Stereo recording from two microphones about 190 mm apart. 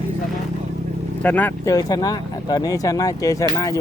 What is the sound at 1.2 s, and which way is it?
Speech, 10° left (ahead or behind).